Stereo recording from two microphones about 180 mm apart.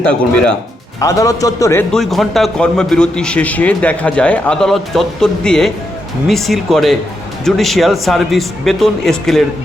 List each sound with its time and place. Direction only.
0.9 s a man's voice: 20° left (ahead or behind)
1.9 s a man's voice: centre (ahead or behind)